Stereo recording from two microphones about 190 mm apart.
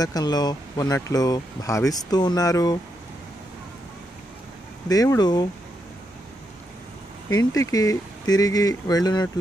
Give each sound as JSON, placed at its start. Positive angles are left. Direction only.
{"t": 0.0, "sound": "speech", "side_deg": 20}
{"t": 4.8, "sound": "speech", "side_deg": 20}
{"t": 7.2, "sound": "speech", "side_deg": 20}